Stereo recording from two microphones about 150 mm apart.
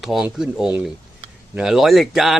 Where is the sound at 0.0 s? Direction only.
Centre (ahead or behind).